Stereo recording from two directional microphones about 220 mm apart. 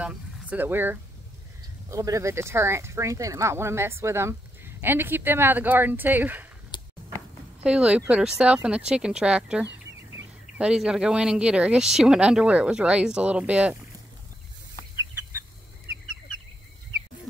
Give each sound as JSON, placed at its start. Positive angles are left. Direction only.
{"t": 0.0, "sound": "speech", "side_deg": -5}
{"t": 6.7, "sound": "a sound", "side_deg": 20}
{"t": 7.6, "sound": "speech", "side_deg": -5}